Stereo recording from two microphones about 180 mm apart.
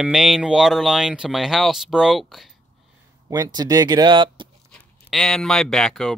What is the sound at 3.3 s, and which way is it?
Speech, 20° right (ahead or behind).